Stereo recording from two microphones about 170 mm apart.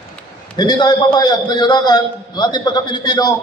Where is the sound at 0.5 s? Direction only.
25° left (ahead or behind).